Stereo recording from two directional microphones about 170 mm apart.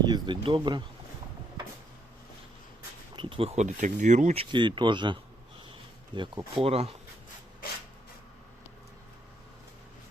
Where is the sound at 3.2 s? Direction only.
30° right (ahead or behind).